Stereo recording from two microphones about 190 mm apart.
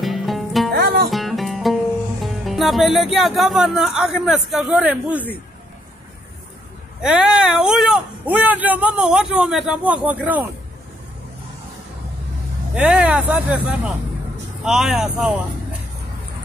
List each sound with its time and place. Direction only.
0.0 s music: centre (ahead or behind)
2.2 s speech: centre (ahead or behind)
7.0 s a man's voice: 5° right (ahead or behind)
12.7 s speech: 5° right (ahead or behind)